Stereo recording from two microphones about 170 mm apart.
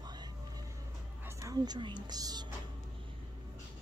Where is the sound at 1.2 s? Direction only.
20° right (ahead or behind).